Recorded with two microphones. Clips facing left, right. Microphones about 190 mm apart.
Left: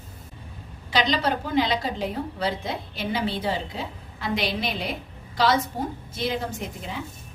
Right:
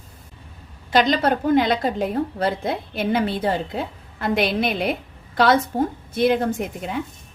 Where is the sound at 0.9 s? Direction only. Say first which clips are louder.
Right 5 dB; 50° right (ahead or behind).